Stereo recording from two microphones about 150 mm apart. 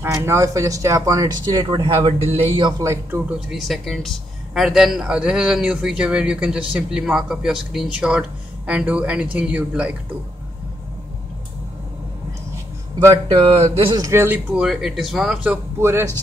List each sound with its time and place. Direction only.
0.0 s speech: 15° right (ahead or behind); by 2.7 s 40° right (ahead or behind)
2.8 s speech: 15° right (ahead or behind)
3.3 s speech: centre (ahead or behind)
13.7 s a man's voice: 35° right (ahead or behind)
14.0 s speech: 15° right (ahead or behind)